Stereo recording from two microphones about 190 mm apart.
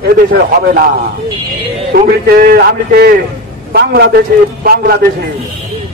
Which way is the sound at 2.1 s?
55° right (ahead or behind).